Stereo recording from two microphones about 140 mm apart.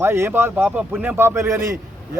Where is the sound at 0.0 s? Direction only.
15° right (ahead or behind).